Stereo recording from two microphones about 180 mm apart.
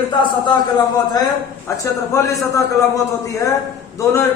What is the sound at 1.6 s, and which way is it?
Speech, 15° left (ahead or behind).